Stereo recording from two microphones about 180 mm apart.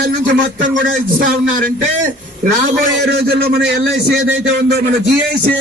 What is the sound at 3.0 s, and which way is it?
Speech, 60° right (ahead or behind).